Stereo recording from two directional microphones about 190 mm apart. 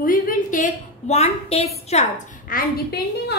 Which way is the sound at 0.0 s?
45° left (ahead or behind).